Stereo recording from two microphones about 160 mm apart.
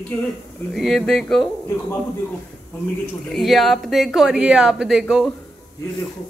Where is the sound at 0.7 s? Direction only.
Centre (ahead or behind).